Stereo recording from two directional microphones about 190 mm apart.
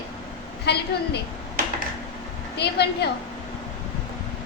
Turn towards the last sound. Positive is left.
turn(degrees=60)  # may be behind; listen again after turning